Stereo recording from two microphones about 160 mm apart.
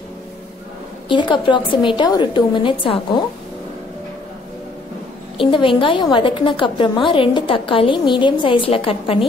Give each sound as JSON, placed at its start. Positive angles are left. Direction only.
{"t": 1.0, "sound": "a woman's voice", "side_deg": 30}
{"t": 5.4, "sound": "a woman's voice", "side_deg": 30}